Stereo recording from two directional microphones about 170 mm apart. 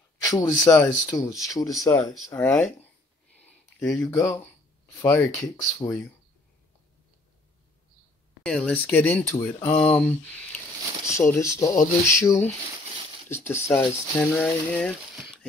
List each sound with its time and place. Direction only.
0.2 s speech: 20° left (ahead or behind)
3.3 s a sound: 10° left (ahead or behind)
5.0 s speech: 15° left (ahead or behind)
8.4 s speech: 5° left (ahead or behind)